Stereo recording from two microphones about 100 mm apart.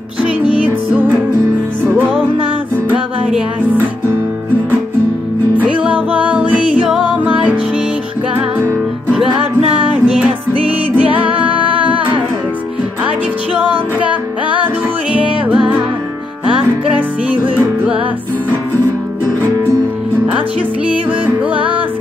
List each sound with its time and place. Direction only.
0.7 s music: 15° right (ahead or behind)
5.6 s music: 15° right (ahead or behind)
10.0 s music: 10° right (ahead or behind)
13.6 s music: 15° right (ahead or behind)
21.5 s music: 15° right (ahead or behind)